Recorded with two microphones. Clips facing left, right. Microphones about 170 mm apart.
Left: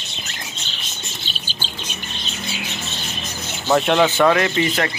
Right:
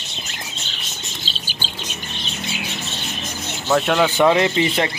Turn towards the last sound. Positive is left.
turn(degrees=-20)  # may be behind; listen again after turning